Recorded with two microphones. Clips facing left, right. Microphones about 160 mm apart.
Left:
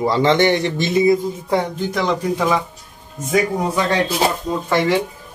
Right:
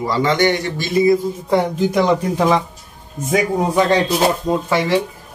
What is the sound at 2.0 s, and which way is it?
Speech, 10° right (ahead or behind).